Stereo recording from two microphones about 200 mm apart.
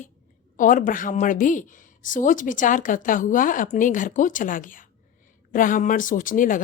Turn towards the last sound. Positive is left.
turn(degrees=40)  # may be behind; listen again after turning